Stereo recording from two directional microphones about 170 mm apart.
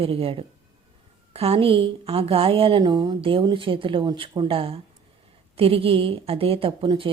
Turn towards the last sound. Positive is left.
turn(degrees=-30)  # may be behind; listen again after turning